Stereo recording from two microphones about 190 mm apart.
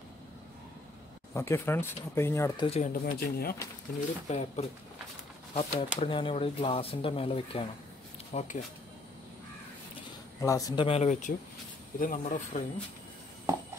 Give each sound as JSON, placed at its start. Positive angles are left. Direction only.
{"t": 1.3, "sound": "speech", "side_deg": 15}
{"t": 2.6, "sound": "speech", "side_deg": 30}
{"t": 2.9, "sound": "speech", "side_deg": 50}
{"t": 4.3, "sound": "speech", "side_deg": 40}
{"t": 10.4, "sound": "speech", "side_deg": 15}
{"t": 10.9, "sound": "speech", "side_deg": 35}